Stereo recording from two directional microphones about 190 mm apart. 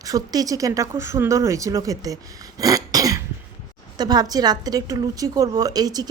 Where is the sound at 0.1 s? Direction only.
20° right (ahead or behind).